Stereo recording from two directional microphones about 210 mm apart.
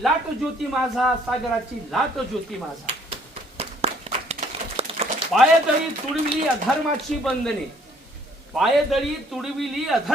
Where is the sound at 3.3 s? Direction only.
30° right (ahead or behind).